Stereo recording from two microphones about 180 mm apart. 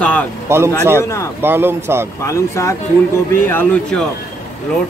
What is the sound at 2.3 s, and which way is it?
Speech, 15° left (ahead or behind).